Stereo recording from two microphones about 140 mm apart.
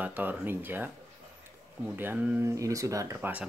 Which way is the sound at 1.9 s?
15° right (ahead or behind).